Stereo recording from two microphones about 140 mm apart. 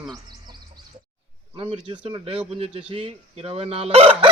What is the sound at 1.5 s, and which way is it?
Speech, 35° right (ahead or behind).